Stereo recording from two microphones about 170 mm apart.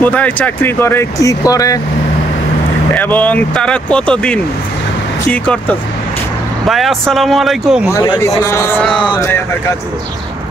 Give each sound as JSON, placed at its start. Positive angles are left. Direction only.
{"t": 0.0, "sound": "speech", "side_deg": 10}
{"t": 2.9, "sound": "speech", "side_deg": 10}
{"t": 6.7, "sound": "speech", "side_deg": 0}
{"t": 7.9, "sound": "speech", "side_deg": 15}